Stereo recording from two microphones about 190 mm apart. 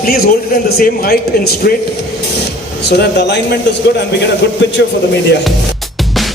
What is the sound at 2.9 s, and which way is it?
Speech, 60° left (ahead or behind).